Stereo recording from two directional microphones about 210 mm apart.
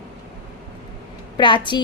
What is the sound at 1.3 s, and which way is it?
Speech, 20° left (ahead or behind).